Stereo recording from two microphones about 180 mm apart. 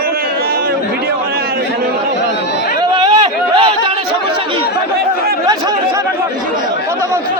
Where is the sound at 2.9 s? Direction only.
25° right (ahead or behind).